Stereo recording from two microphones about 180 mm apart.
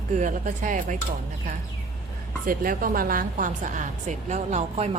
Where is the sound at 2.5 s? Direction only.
50° right (ahead or behind).